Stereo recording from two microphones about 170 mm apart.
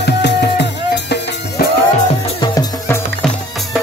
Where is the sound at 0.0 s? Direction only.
85° left.